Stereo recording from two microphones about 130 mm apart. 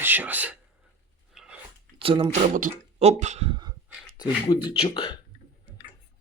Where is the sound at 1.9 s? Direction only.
40° right (ahead or behind).